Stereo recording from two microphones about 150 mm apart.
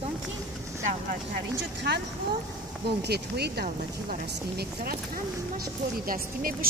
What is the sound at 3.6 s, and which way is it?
Speech, 80° right.